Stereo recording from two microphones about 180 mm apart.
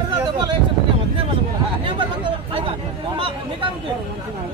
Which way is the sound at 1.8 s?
30° right (ahead or behind).